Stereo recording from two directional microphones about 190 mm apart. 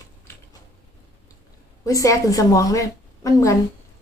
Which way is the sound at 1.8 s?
15° left (ahead or behind).